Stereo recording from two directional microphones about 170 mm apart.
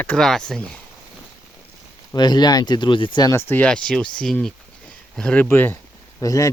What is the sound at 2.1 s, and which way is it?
Speech, 25° left (ahead or behind).